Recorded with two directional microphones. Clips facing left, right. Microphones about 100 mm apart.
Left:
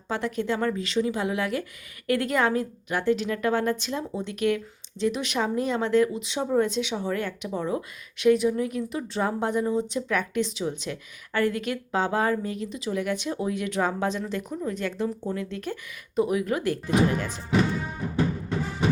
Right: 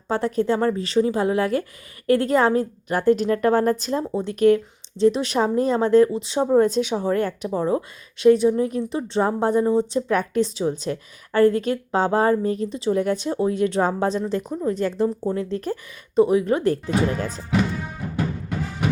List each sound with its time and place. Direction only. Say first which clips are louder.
0.1 s a woman's voice: right 6 dB; 40° right (ahead or behind)